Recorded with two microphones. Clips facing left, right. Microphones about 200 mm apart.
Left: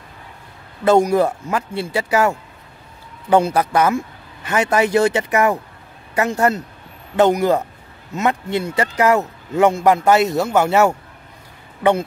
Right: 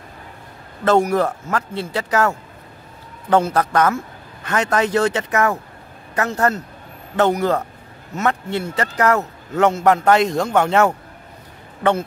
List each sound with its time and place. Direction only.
0.8 s a man's voice: 15° left (ahead or behind)